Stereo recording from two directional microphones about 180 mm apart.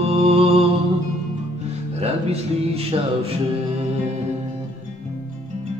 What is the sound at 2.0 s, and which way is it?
Speech, 35° right (ahead or behind).